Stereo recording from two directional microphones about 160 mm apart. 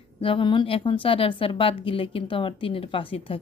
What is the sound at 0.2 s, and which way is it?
Speech, 35° left (ahead or behind).